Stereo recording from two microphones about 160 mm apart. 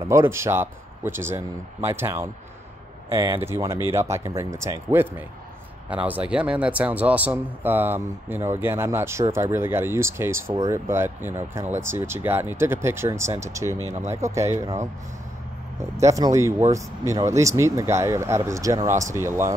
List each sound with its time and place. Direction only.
0.1 s a man's voice: 15° right (ahead or behind)
13.8 s speech: 45° right (ahead or behind)
14.1 s speech: 20° right (ahead or behind)
16.0 s speech: 20° right (ahead or behind)